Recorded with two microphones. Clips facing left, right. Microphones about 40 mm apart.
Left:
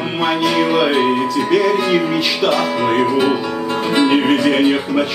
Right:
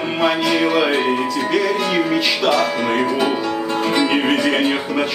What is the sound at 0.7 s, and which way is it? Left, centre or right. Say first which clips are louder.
Speech: left 2 dB; centre.